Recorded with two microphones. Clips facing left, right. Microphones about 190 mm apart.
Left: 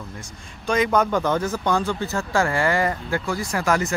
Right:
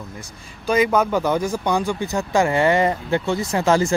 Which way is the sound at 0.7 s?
10° right (ahead or behind).